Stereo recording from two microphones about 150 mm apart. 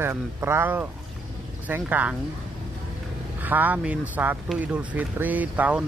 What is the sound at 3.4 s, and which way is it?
Speech, 10° right (ahead or behind).